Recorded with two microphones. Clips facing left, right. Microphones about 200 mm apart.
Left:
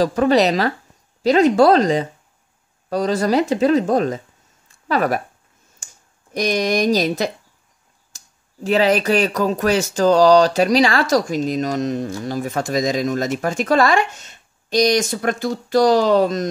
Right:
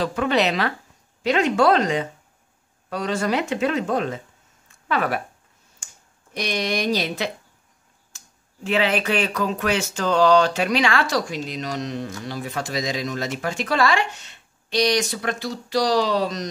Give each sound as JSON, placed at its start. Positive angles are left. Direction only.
{"t": 0.0, "sound": "speech", "side_deg": 40}
{"t": 6.3, "sound": "speech", "side_deg": 45}
{"t": 8.1, "sound": "a sound", "side_deg": 35}
{"t": 8.6, "sound": "speech", "side_deg": 40}